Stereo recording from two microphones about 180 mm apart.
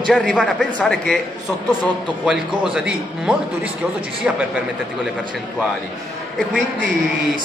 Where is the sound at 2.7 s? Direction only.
5° right (ahead or behind).